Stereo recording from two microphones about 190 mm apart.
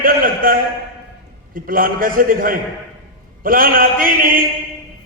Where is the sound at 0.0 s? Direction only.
50° right (ahead or behind).